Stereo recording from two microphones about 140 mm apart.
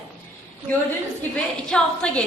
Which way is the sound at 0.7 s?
10° left (ahead or behind).